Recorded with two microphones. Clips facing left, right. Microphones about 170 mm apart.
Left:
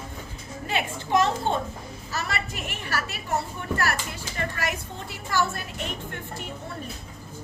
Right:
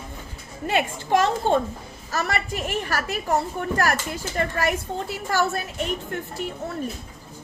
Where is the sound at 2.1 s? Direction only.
45° right (ahead or behind).